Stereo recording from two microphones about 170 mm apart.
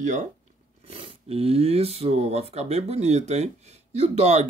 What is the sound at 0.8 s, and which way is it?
Speech, 35° right (ahead or behind).